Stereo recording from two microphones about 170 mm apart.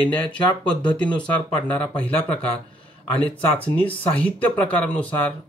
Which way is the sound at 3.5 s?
10° left (ahead or behind).